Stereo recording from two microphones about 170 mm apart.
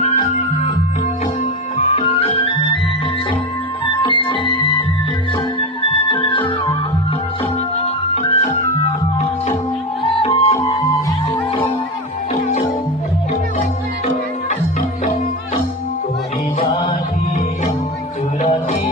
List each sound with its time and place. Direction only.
0.0 s music: 45° left (ahead or behind)
1.8 s music: 35° left (ahead or behind)
3.8 s music: 30° left (ahead or behind)
8.1 s music: 40° left (ahead or behind)
10.0 s music: 35° left (ahead or behind)